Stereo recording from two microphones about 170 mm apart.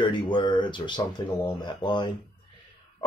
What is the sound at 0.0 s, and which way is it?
Speech, 30° left (ahead or behind).